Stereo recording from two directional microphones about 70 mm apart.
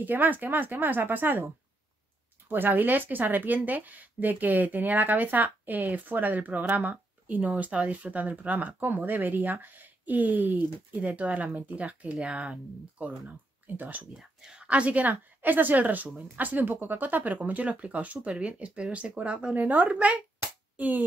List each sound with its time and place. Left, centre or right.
0.0 s speech: right
2.5 s speech: right
9.8 s speech: right
13.0 s speech: right
14.1 s a woman's voice: centre
20.3 s a sound: right